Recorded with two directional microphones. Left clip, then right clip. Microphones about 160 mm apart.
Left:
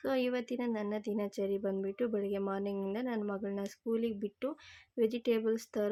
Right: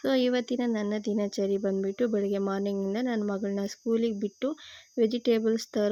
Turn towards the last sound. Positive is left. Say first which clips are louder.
# right 6 dB
turn(degrees=-35)  # may be behind; listen again after turning